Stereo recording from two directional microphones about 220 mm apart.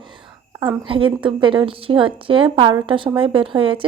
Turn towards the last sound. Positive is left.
turn(degrees=-25)  # may be behind; listen again after turning